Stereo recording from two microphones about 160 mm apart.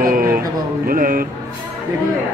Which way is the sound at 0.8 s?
60° right (ahead or behind).